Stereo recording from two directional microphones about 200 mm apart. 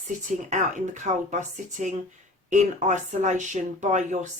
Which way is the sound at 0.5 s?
35° right (ahead or behind).